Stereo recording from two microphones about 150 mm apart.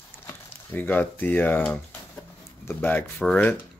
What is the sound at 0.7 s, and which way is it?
Speech, 10° left (ahead or behind).